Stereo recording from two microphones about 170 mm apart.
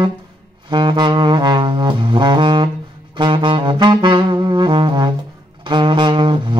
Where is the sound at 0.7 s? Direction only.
25° right (ahead or behind).